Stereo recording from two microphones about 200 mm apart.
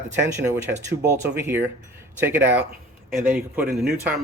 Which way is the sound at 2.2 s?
10° right (ahead or behind).